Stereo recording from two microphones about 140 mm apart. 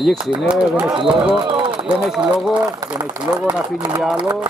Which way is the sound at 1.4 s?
35° right (ahead or behind).